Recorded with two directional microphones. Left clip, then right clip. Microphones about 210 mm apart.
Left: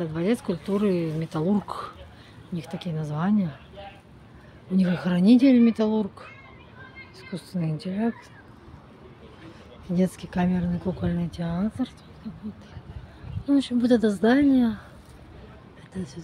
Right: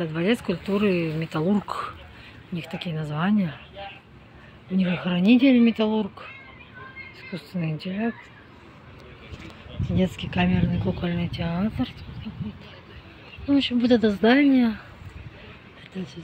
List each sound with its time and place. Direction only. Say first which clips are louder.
0.0 s speech: right 2 dB; centre (ahead or behind)
4.7 s speech: even; 15° left (ahead or behind)
7.3 s speech: even; 10° left (ahead or behind)
9.9 s speech: right 2 dB; 10° left (ahead or behind)
13.5 s speech: right 1 dB; centre (ahead or behind)